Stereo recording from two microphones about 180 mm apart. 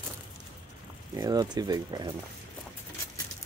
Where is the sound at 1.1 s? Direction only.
20° right (ahead or behind).